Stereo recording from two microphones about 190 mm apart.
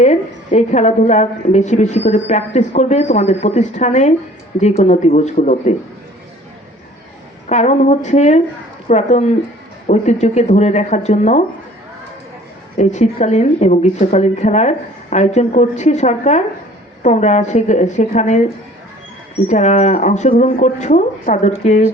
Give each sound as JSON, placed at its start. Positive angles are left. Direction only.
{"t": 0.0, "sound": "a woman's voice", "side_deg": 35}
{"t": 7.4, "sound": "a woman's voice", "side_deg": 35}
{"t": 12.7, "sound": "a woman's voice", "side_deg": 40}
{"t": 19.5, "sound": "a woman's voice", "side_deg": 40}